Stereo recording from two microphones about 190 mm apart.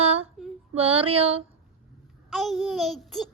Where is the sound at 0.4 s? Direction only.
Centre (ahead or behind).